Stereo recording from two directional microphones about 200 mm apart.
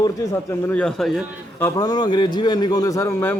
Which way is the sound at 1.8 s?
20° left (ahead or behind).